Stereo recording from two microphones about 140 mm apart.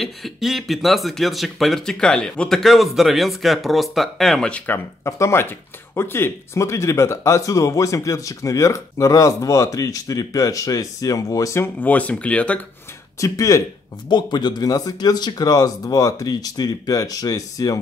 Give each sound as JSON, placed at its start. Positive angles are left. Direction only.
{"t": 0.0, "sound": "speech", "side_deg": 0}
{"t": 13.2, "sound": "speech", "side_deg": 20}